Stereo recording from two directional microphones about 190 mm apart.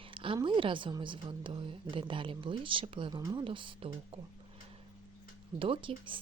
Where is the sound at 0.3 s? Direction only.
25° right (ahead or behind).